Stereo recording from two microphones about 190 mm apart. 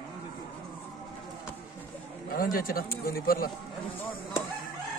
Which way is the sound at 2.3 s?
50° left (ahead or behind).